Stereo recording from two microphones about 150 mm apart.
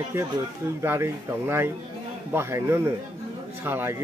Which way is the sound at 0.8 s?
15° right (ahead or behind).